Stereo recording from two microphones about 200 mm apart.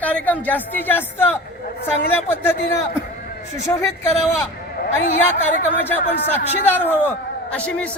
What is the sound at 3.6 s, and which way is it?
Speech, 15° left (ahead or behind).